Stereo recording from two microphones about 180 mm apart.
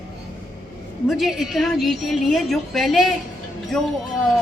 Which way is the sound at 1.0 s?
Centre (ahead or behind).